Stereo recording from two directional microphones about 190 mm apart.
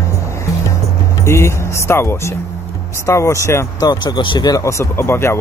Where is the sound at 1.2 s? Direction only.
15° left (ahead or behind).